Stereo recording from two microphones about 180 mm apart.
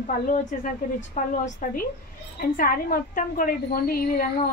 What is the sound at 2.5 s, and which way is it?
A woman's voice, 55° left (ahead or behind).